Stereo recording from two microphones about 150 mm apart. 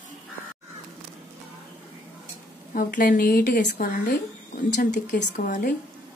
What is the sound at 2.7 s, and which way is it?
Speech, 65° left (ahead or behind).